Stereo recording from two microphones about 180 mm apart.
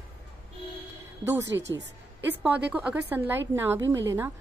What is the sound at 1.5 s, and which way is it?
Speech, 85° right.